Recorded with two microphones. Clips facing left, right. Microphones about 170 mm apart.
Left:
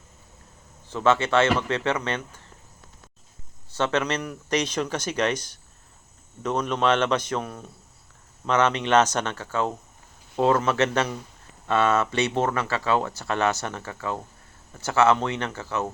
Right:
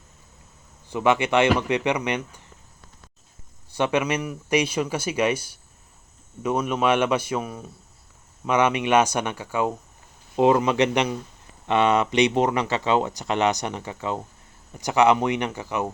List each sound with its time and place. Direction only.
0.9 s speech: 15° right (ahead or behind)
3.7 s speech: 15° right (ahead or behind)